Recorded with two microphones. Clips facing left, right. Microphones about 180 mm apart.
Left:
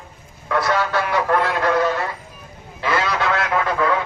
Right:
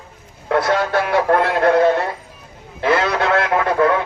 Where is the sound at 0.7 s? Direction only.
55° right (ahead or behind).